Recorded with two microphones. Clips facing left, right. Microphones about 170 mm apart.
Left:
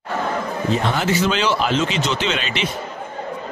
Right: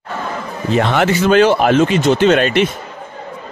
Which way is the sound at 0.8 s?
65° right (ahead or behind).